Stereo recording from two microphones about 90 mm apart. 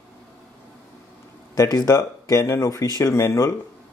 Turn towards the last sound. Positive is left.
turn(degrees=35)  # may be behind; listen again after turning